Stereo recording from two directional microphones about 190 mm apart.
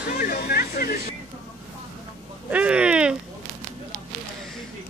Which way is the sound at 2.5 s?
5° right (ahead or behind).